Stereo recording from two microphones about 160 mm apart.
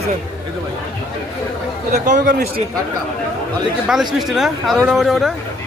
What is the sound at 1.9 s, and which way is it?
Speech, 50° right (ahead or behind).